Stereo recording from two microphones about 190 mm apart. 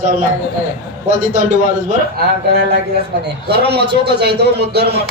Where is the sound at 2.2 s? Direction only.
60° right (ahead or behind).